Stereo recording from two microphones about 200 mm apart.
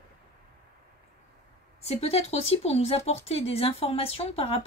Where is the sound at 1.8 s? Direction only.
30° left (ahead or behind).